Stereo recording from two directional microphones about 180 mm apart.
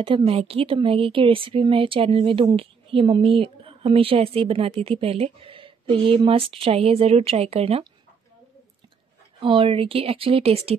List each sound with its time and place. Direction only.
0.0 s speech: 30° right (ahead or behind)
9.4 s speech: 30° right (ahead or behind)